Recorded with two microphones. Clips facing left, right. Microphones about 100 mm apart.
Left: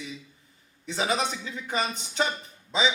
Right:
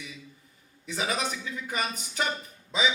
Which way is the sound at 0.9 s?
25° left (ahead or behind).